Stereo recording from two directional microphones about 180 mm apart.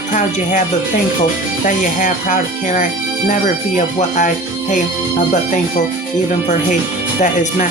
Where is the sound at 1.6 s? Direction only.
45° left (ahead or behind).